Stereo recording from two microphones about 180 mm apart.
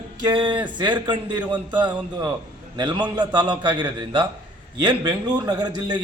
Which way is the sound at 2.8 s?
25° right (ahead or behind).